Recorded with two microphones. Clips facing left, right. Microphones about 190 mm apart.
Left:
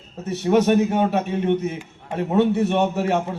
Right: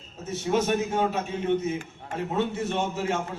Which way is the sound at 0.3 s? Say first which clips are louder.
Left 7 dB; 65° left (ahead or behind).